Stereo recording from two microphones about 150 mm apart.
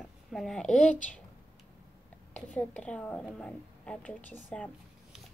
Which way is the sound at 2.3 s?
10° left (ahead or behind).